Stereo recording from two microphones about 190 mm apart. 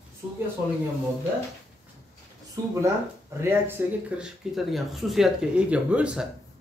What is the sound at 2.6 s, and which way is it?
Speech, 20° right (ahead or behind).